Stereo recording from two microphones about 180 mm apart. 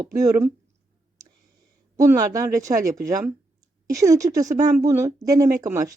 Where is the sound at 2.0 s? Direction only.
20° right (ahead or behind).